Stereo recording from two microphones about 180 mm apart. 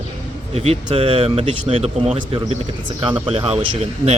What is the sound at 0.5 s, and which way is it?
Speech, 35° right (ahead or behind).